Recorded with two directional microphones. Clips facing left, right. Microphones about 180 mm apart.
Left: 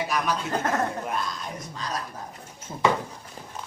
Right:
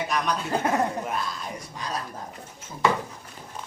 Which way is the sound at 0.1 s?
Centre (ahead or behind).